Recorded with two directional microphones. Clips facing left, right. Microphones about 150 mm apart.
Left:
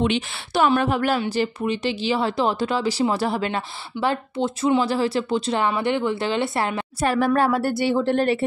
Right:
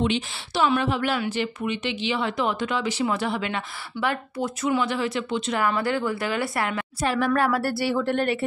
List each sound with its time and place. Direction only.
0.0 s a woman's voice: 55° left (ahead or behind)
0.7 s a woman's voice: 45° left (ahead or behind)
1.2 s speech: 35° left (ahead or behind)
5.7 s speech: 20° left (ahead or behind)